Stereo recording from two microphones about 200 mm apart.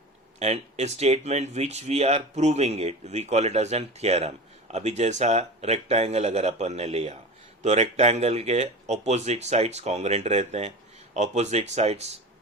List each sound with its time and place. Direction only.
0.3 s speech: 35° right (ahead or behind)